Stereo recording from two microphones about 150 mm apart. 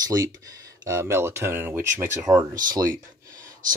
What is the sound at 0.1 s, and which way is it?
Speech, 25° right (ahead or behind).